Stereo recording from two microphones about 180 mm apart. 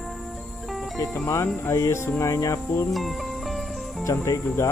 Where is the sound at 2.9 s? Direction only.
Centre (ahead or behind).